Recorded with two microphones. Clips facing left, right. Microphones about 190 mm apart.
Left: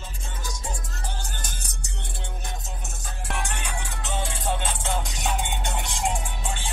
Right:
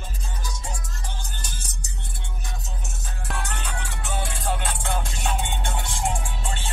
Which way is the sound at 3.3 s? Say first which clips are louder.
Even; 10° left (ahead or behind).